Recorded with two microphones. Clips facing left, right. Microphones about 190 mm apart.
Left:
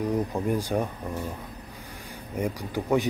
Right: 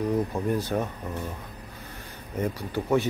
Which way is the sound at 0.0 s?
15° left (ahead or behind).